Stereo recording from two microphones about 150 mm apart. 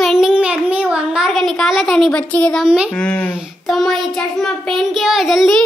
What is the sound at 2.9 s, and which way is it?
Speech, 5° left (ahead or behind).